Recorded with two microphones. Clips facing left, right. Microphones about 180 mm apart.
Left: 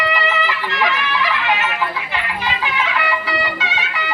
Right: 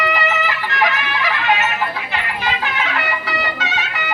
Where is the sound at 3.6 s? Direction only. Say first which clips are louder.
Even; 45° right (ahead or behind).